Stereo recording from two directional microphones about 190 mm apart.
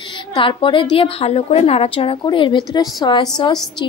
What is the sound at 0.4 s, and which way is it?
A woman's voice, 25° left (ahead or behind).